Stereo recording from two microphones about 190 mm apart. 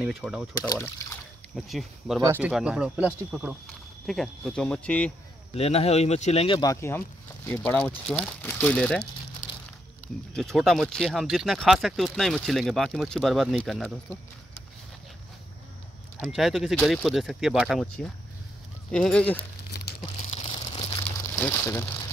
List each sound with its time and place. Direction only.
0.0 s speech: 5° right (ahead or behind)
0.6 s speech: 15° left (ahead or behind)
1.5 s speech: centre (ahead or behind)
5.5 s speech: 35° left (ahead or behind); by 9.0 s 5° left (ahead or behind)
10.3 s speech: centre (ahead or behind)
16.2 s speech: centre (ahead or behind)
20.2 s a sound: 30° left (ahead or behind)
21.4 s speech: 15° left (ahead or behind)